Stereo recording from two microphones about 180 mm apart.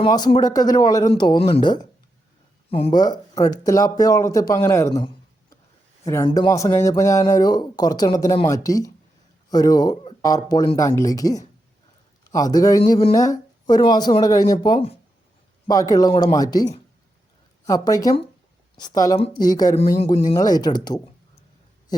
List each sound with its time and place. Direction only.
0.0 s speech: 25° left (ahead or behind)
3.0 s speech: 20° left (ahead or behind)
6.2 s speech: 25° left (ahead or behind)
6.5 s speech: 15° left (ahead or behind)
19.7 s speech: 35° left (ahead or behind)
20.3 s speech: 20° left (ahead or behind)